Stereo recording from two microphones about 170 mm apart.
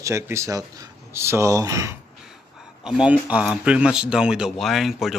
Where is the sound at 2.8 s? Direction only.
5° right (ahead or behind).